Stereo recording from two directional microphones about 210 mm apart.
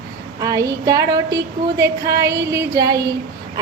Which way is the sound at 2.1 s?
50° right (ahead or behind).